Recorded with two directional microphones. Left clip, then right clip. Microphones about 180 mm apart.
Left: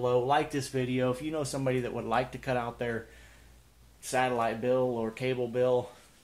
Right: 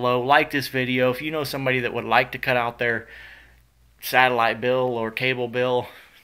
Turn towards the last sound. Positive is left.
turn(degrees=-10)  # may be behind; listen again after turning